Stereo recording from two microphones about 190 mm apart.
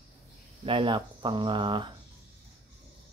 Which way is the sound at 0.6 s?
25° right (ahead or behind).